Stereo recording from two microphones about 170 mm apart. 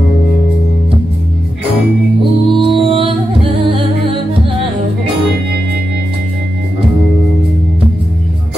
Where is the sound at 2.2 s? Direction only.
30° right (ahead or behind).